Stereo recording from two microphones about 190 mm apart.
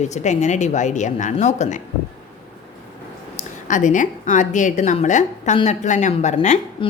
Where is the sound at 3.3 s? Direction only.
40° left (ahead or behind).